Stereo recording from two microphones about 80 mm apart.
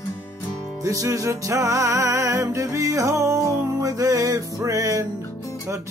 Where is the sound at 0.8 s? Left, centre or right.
Right.